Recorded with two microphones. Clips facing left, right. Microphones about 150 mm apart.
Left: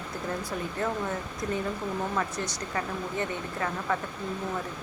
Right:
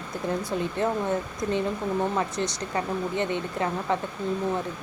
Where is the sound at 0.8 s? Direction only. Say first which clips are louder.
Right 4 dB; 20° right (ahead or behind).